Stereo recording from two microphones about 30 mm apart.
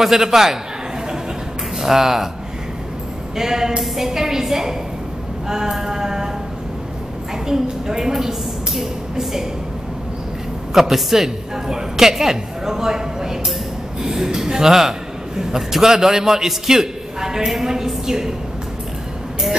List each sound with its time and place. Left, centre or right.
0.0 s a man's voice: centre
1.8 s a man's voice: centre
3.3 s a man's voice: centre
7.8 s a woman's voice: centre
10.7 s a man's voice: centre